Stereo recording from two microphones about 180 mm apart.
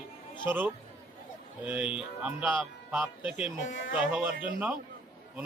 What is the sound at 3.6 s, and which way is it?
Speech, 90° left.